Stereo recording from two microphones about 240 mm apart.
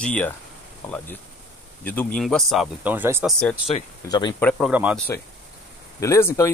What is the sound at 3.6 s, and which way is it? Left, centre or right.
Speech, left.